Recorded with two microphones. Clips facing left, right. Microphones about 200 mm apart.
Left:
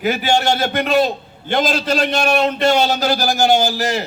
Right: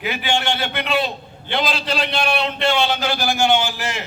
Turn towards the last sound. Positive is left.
turn(degrees=40)  # may be behind; listen again after turning